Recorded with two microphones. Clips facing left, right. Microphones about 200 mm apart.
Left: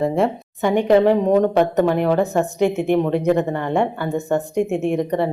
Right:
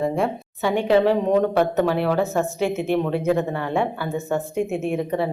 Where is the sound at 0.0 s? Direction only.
20° left (ahead or behind).